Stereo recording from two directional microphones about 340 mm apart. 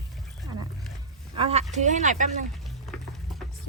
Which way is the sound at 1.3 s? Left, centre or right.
Centre.